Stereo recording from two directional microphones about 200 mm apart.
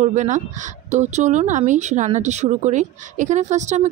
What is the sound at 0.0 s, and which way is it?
Speech, 35° right (ahead or behind).